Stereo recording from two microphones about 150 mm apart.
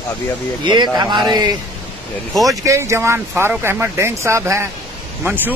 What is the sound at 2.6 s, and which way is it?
Speech, 20° right (ahead or behind).